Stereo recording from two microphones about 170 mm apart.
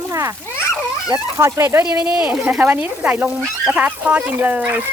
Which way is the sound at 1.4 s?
15° right (ahead or behind).